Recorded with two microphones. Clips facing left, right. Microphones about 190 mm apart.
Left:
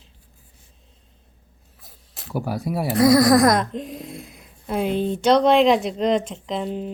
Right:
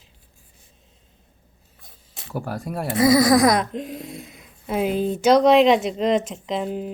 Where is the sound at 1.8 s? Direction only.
Centre (ahead or behind).